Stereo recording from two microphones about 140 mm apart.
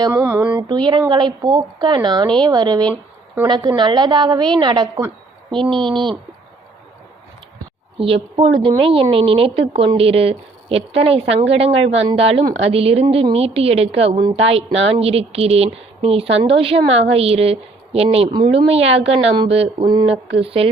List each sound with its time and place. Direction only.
0.0 s a sound: 20° right (ahead or behind)
0.5 s speech: 35° right (ahead or behind)
7.9 s speech: 40° right (ahead or behind)